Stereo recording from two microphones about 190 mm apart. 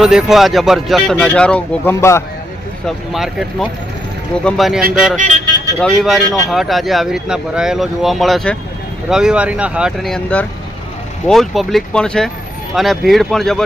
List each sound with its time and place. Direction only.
0.0 s speech: centre (ahead or behind); by 2.2 s 15° left (ahead or behind)
3.1 s speech: centre (ahead or behind)
5.1 s speech: 40° right (ahead or behind)
5.8 s speech: centre (ahead or behind)